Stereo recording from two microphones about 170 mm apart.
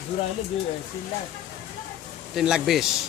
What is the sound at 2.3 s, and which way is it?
Speech, centre (ahead or behind).